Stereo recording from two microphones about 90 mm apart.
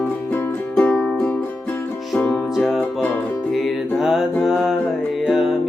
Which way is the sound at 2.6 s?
5° left (ahead or behind).